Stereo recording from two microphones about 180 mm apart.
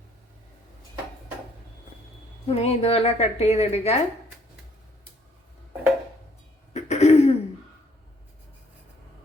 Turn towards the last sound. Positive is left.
turn(degrees=35)  # may be behind; listen again after turning